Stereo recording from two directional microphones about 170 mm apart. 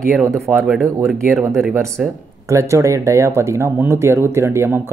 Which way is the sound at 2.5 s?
15° right (ahead or behind).